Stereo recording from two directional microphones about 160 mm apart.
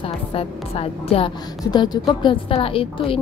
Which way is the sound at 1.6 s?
25° left (ahead or behind).